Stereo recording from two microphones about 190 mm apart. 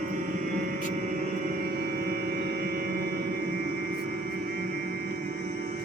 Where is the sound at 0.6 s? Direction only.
45° right (ahead or behind).